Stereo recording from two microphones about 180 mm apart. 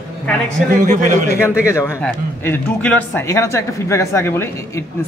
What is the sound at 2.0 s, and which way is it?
A man's voice, 10° left (ahead or behind).